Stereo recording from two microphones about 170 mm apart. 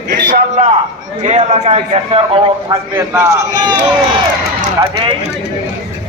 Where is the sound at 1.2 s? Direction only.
45° right (ahead or behind).